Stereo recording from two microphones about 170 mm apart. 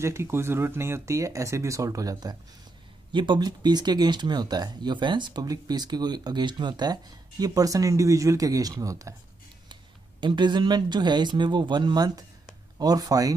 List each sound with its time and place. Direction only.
0.0 s speech: 15° right (ahead or behind)
10.2 s speech: 25° right (ahead or behind)